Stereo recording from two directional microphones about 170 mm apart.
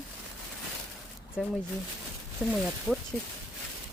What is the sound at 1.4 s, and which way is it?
Speech, 5° right (ahead or behind).